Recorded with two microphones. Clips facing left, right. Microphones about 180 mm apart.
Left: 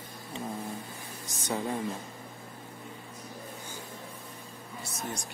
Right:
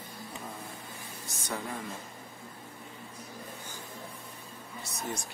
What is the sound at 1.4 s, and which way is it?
Speech, 20° left (ahead or behind).